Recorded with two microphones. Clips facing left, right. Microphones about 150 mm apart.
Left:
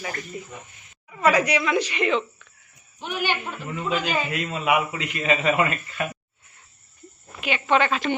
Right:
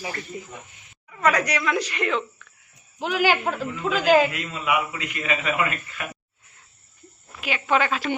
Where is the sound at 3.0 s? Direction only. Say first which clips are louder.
Right 5 dB; 90° right.